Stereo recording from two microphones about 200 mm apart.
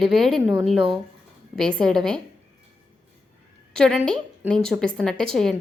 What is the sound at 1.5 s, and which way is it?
Speech, centre (ahead or behind).